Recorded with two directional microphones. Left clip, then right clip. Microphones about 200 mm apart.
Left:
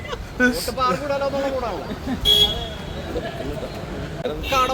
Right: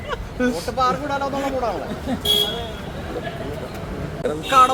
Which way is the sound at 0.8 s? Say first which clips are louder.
Right 1 dB; 70° right (ahead or behind).